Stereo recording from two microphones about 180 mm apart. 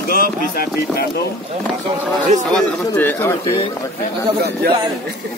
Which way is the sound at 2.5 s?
10° left (ahead or behind).